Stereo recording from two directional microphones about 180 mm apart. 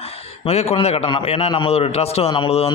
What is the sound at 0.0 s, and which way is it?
A man's voice, 35° left (ahead or behind).